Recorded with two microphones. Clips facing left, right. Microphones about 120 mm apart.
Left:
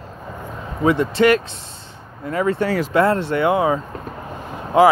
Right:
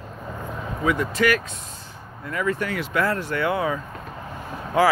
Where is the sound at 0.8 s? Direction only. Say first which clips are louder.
Left 6 dB; 30° left (ahead or behind).